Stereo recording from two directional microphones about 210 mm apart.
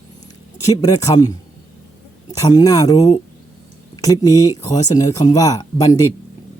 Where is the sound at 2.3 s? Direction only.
15° left (ahead or behind).